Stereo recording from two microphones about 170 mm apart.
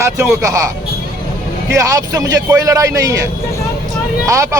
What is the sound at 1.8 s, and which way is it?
A man's voice, 20° right (ahead or behind).